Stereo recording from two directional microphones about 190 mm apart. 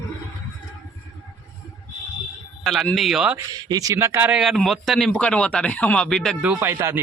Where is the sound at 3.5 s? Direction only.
20° right (ahead or behind).